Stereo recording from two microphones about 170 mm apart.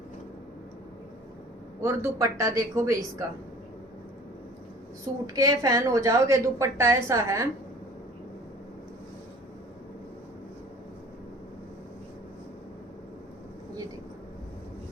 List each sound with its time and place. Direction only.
1.8 s speech: 15° right (ahead or behind)
5.2 s a woman's voice: 20° right (ahead or behind)